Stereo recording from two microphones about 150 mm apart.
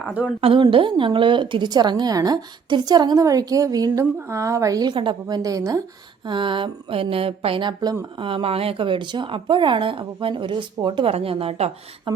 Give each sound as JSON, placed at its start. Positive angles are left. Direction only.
{"t": 0.4, "sound": "a woman's voice", "side_deg": -35}